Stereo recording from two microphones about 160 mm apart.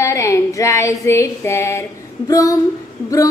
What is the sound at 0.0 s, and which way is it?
Female singing, 20° left (ahead or behind).